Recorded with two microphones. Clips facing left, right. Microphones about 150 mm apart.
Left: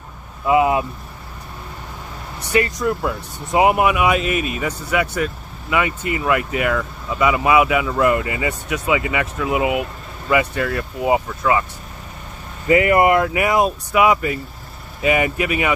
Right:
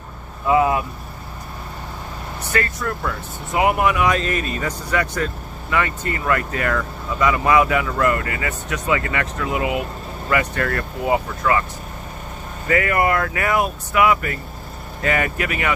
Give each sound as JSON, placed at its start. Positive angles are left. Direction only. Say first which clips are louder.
{"t": 0.5, "sound": "speech", "louder": "left 1 dB", "side_deg": 20}
{"t": 2.5, "sound": "speech", "louder": "left 5 dB", "side_deg": 15}
{"t": 12.6, "sound": "speech", "louder": "left 5 dB", "side_deg": 20}